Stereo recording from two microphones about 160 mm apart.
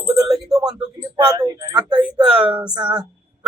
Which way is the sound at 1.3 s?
25° right (ahead or behind).